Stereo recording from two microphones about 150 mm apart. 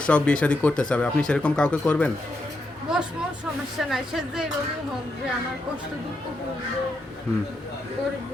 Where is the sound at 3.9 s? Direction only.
Centre (ahead or behind).